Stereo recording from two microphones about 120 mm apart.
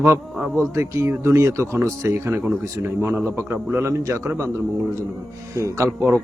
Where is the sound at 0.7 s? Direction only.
25° right (ahead or behind).